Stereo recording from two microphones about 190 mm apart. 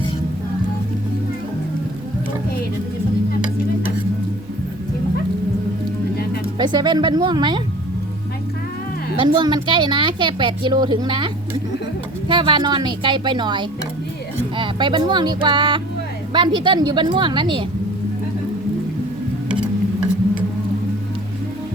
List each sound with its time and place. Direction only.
6.6 s speech: 20° right (ahead or behind)
9.1 s speech: 25° right (ahead or behind)
12.3 s speech: 25° right (ahead or behind)